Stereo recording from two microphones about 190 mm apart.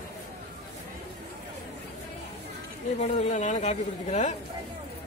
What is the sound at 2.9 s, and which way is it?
Speech, 35° left (ahead or behind).